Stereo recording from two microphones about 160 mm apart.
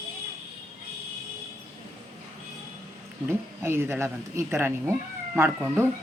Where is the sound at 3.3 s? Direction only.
15° right (ahead or behind).